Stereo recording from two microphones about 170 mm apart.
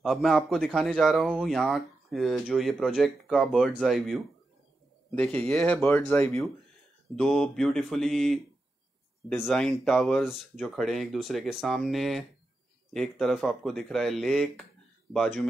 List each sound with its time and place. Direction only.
0.0 s speech: centre (ahead or behind)